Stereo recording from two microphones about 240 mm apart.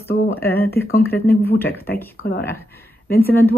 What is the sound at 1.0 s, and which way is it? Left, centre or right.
Speech, centre.